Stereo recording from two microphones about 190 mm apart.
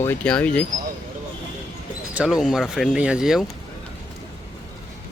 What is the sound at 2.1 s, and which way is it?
Speech, 5° right (ahead or behind).